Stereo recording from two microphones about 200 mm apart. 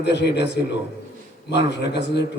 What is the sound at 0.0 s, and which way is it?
A man's voice, 60° left (ahead or behind).